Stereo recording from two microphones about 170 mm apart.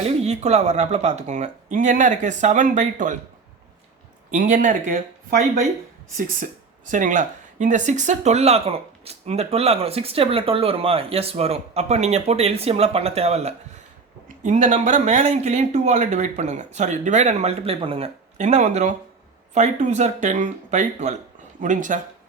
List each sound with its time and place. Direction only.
0.0 s speech: 40° right (ahead or behind)
4.3 s speech: 45° right (ahead or behind)